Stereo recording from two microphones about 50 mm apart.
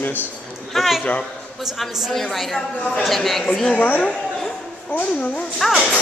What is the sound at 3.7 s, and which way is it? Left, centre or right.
Speech, left.